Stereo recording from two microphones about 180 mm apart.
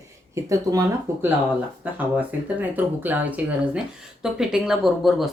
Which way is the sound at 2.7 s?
10° right (ahead or behind).